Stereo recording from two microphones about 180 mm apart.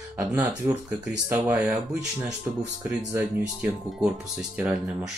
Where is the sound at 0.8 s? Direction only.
5° right (ahead or behind).